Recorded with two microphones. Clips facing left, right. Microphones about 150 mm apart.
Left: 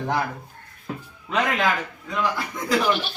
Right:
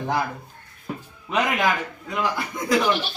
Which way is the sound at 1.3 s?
15° right (ahead or behind).